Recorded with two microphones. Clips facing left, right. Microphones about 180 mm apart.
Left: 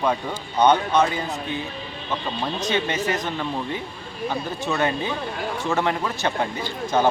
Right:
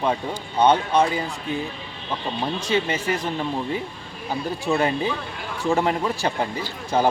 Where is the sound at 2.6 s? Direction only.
30° right (ahead or behind).